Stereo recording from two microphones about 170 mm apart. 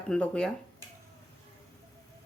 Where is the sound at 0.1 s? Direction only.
5° left (ahead or behind).